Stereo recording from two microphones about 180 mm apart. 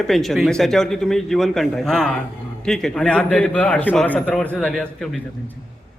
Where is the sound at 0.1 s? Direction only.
Centre (ahead or behind).